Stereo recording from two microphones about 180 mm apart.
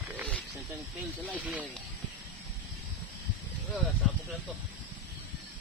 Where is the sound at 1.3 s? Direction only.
10° right (ahead or behind).